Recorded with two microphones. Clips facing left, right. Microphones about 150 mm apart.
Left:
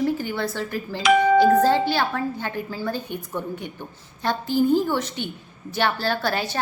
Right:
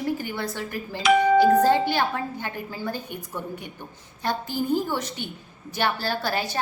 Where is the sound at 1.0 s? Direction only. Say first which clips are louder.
Left 1 dB; 90° left.